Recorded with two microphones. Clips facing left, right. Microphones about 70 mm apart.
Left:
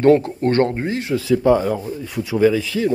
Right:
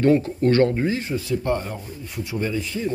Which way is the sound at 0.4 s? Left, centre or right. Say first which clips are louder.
Even; left.